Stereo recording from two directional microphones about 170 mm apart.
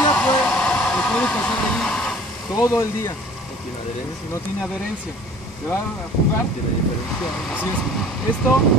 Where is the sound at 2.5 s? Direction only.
20° left (ahead or behind).